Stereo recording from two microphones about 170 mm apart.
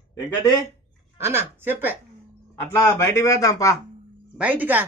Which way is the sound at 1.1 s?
15° right (ahead or behind).